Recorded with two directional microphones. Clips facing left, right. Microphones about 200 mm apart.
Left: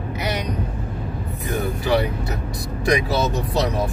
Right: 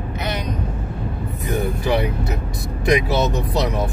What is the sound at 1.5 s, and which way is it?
Speech, 20° right (ahead or behind).